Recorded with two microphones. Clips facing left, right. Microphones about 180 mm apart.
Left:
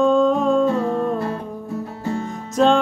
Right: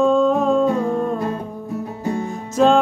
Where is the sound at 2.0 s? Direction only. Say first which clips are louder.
Right 2 dB; 15° right (ahead or behind).